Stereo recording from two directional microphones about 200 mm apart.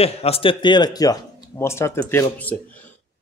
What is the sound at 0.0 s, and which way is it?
Speech, 30° left (ahead or behind).